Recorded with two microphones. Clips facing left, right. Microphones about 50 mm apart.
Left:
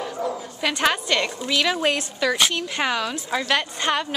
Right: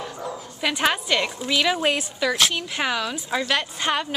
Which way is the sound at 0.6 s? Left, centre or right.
Centre.